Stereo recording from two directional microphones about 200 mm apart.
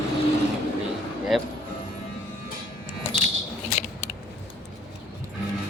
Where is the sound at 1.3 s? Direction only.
Centre (ahead or behind).